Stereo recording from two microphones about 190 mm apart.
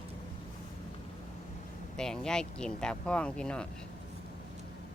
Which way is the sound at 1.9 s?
5° left (ahead or behind).